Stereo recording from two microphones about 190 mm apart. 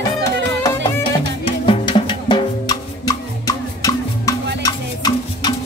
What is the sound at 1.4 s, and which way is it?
Music, 25° left (ahead or behind).